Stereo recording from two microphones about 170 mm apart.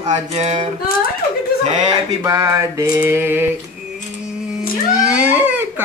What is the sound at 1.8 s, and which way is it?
Mantra, 25° right (ahead or behind).